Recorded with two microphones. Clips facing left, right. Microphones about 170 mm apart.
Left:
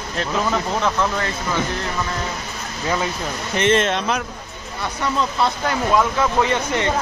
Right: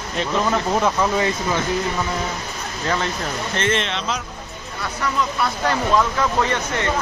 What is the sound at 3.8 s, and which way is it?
Speech, 50° left (ahead or behind).